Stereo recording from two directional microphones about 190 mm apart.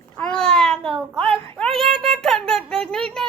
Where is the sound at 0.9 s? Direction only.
Centre (ahead or behind).